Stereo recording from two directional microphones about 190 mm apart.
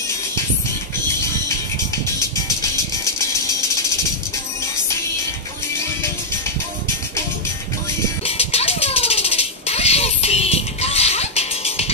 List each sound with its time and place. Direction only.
8.2 s music: 30° left (ahead or behind)